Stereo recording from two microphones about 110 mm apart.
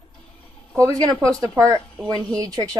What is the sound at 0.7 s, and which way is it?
Speech, 30° right (ahead or behind).